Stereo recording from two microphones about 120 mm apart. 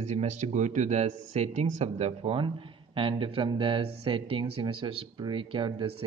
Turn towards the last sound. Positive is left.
turn(degrees=-45)  # may be behind; listen again after turning